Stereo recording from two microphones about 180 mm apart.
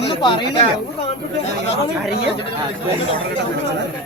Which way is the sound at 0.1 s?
30° left (ahead or behind).